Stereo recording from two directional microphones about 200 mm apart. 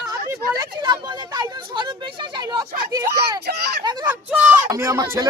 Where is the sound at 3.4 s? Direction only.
55° right (ahead or behind).